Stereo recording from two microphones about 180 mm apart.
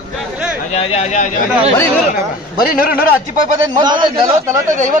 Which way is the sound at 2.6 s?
55° left (ahead or behind).